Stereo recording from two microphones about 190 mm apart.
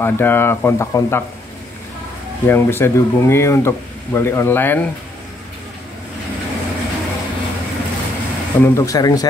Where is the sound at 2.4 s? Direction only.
10° left (ahead or behind).